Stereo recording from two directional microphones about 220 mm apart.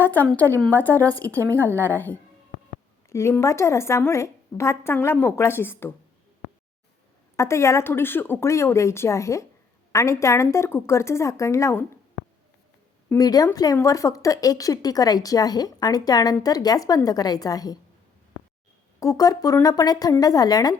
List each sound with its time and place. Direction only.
0.0 s speech: 10° left (ahead or behind)
7.3 s speech: 10° left (ahead or behind)
13.1 s speech: 15° left (ahead or behind)
18.9 s speech: 15° left (ahead or behind)